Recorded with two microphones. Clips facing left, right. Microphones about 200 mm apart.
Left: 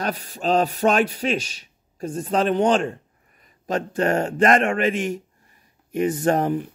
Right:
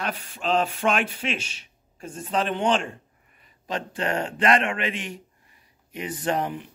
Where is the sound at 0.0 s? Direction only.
40° left (ahead or behind).